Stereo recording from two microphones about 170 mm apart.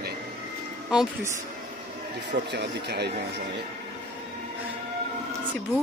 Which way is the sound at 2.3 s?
80° right.